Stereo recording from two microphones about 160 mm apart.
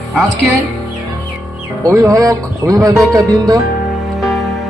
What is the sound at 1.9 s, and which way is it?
Speech, 20° right (ahead or behind).